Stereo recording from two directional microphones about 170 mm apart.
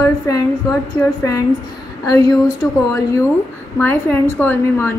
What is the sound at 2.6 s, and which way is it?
Speech, 15° left (ahead or behind).